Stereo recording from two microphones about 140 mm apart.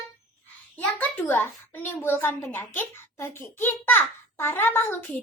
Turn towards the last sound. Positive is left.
turn(degrees=15)  # may be behind; listen again after turning